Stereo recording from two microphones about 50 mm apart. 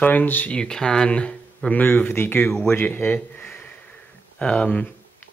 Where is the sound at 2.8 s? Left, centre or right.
Left.